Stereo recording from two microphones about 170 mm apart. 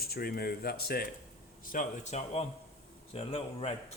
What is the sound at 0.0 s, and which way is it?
Speech, 65° left (ahead or behind).